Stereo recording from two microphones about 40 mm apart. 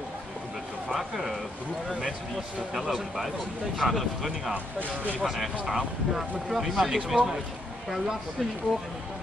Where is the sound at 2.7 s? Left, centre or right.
Centre.